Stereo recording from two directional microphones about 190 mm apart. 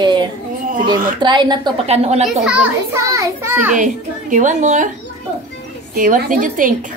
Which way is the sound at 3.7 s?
40° right (ahead or behind).